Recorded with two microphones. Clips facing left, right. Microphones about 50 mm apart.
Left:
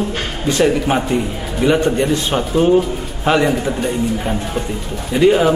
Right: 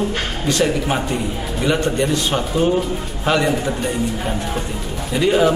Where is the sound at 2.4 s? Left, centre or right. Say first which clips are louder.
Left 3 dB; centre.